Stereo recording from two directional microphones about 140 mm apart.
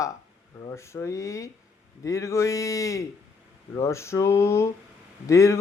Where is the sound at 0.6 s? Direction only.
20° left (ahead or behind).